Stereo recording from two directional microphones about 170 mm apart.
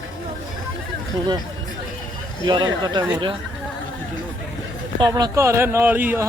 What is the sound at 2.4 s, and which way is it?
Speech, 25° right (ahead or behind).